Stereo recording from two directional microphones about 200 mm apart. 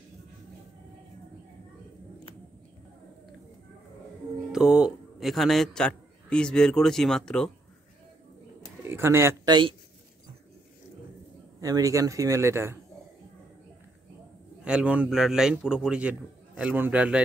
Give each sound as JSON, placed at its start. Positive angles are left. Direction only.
{"t": 4.5, "sound": "a man's voice", "side_deg": -5}
{"t": 8.8, "sound": "speech", "side_deg": -10}
{"t": 11.6, "sound": "a man's voice", "side_deg": -15}
{"t": 14.6, "sound": "a man's voice", "side_deg": -5}